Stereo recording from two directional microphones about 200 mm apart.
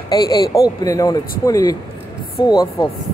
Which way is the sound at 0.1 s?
20° left (ahead or behind).